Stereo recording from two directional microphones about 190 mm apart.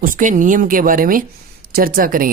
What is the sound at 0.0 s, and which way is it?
Speech, 45° right (ahead or behind).